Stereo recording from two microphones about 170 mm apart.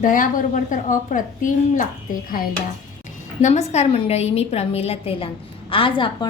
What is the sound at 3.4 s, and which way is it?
A woman's voice, 40° left (ahead or behind).